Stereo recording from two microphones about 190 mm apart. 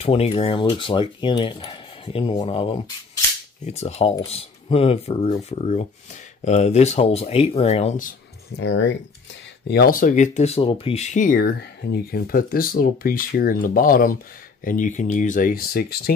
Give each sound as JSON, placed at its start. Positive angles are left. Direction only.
{"t": 0.0, "sound": "speech", "side_deg": 30}
{"t": 8.5, "sound": "speech", "side_deg": 70}
{"t": 9.7, "sound": "speech", "side_deg": 55}
{"t": 11.1, "sound": "speech", "side_deg": 50}